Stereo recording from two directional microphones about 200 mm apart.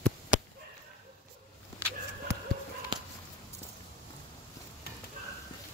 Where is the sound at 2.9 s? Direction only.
25° right (ahead or behind).